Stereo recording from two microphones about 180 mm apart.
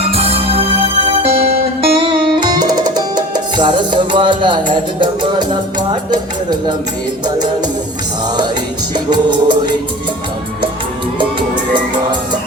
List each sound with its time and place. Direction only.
0.0 s music: 35° right (ahead or behind)
7.3 s music: 25° right (ahead or behind)
9.0 s music: 25° right (ahead or behind)
11.2 s music: 25° right (ahead or behind)